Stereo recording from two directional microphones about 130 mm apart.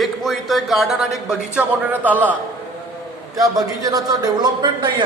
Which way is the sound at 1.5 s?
10° right (ahead or behind).